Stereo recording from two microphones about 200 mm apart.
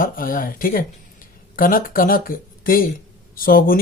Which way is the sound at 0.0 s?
45° left (ahead or behind).